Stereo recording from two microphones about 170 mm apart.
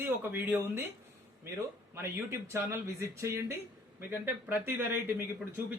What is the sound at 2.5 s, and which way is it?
Speech, 15° right (ahead or behind).